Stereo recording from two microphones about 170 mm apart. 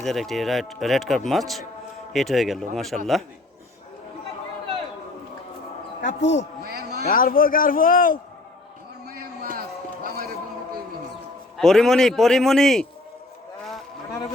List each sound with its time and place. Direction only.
0.0 s speech: centre (ahead or behind)
6.0 s a man's voice: 90° left
6.7 s speech: 65° right (ahead or behind)
7.0 s a man's voice: 55° left (ahead or behind)
9.0 s a sound: 60° right (ahead or behind)
11.5 s speech: centre (ahead or behind)